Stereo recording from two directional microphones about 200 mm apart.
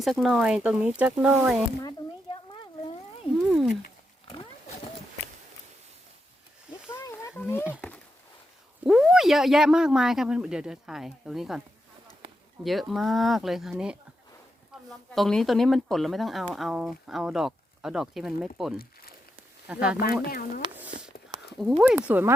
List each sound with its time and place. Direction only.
0.0 s speech: centre (ahead or behind)
1.8 s a sound: 25° left (ahead or behind)
3.3 s wild animals: centre (ahead or behind)
6.9 s wild animals: 15° left (ahead or behind)
8.8 s speech: 5° right (ahead or behind)
12.2 s a sound: 25° right (ahead or behind)
12.6 s speech: centre (ahead or behind)
21.6 s speech: centre (ahead or behind)